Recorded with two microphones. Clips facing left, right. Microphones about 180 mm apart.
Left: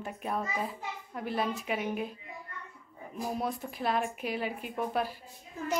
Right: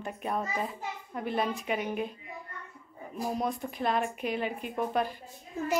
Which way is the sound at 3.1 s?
5° left (ahead or behind).